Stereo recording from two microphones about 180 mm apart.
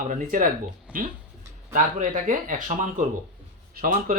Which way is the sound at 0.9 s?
5° right (ahead or behind).